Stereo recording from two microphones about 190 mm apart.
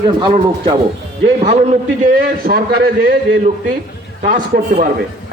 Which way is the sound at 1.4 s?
40° right (ahead or behind).